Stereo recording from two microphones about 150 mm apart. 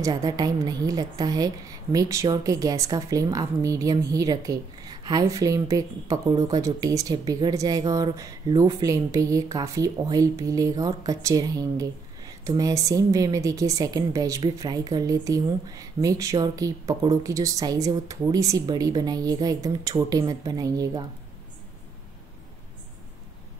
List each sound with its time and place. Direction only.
0.0 s a woman's voice: 25° right (ahead or behind)